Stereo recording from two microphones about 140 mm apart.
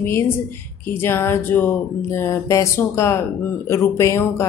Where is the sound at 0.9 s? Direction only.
15° left (ahead or behind).